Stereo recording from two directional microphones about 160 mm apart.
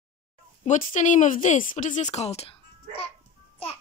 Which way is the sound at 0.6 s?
50° left (ahead or behind).